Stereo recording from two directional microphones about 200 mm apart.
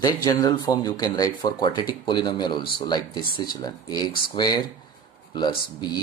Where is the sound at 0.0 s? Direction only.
20° left (ahead or behind).